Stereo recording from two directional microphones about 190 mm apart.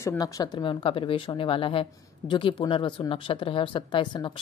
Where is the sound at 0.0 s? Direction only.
15° left (ahead or behind).